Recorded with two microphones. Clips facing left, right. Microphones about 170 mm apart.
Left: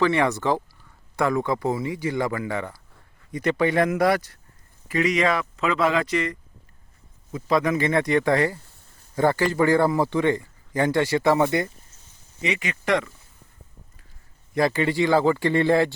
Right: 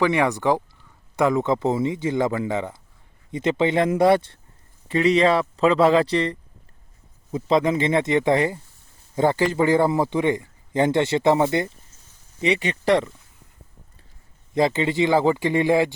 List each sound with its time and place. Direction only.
0.0 s speech: 15° right (ahead or behind); by 13.1 s 30° right (ahead or behind)
14.5 s speech: 20° right (ahead or behind)